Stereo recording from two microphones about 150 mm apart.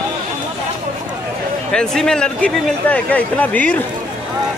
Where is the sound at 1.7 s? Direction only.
5° left (ahead or behind).